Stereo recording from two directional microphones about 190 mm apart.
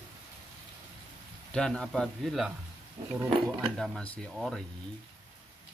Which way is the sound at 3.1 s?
20° right (ahead or behind).